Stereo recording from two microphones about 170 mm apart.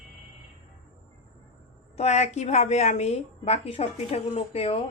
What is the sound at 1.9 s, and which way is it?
A woman's voice, 40° left (ahead or behind).